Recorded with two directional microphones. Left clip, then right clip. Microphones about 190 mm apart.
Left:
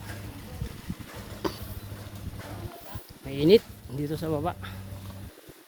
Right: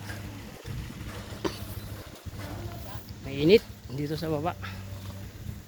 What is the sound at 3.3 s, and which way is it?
Speech, 20° left (ahead or behind).